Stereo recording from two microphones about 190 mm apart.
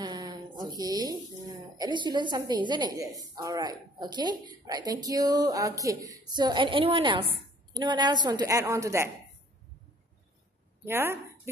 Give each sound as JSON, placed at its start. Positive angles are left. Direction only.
{"t": 0.0, "sound": "a woman's voice", "side_deg": -20}
{"t": 10.9, "sound": "speech", "side_deg": -10}